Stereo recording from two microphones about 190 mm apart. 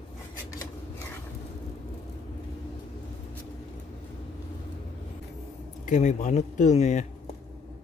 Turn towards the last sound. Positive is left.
turn(degrees=40)  # may be behind; listen again after turning